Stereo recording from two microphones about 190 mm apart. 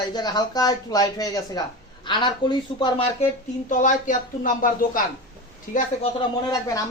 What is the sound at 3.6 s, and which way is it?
Speech, 40° left (ahead or behind).